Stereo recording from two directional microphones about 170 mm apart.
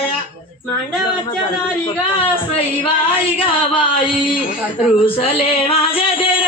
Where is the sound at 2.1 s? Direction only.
30° left (ahead or behind).